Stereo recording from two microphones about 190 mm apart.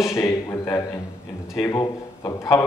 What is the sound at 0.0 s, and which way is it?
A man's voice, 15° left (ahead or behind).